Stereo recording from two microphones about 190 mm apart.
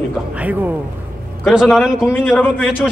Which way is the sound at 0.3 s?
10° right (ahead or behind).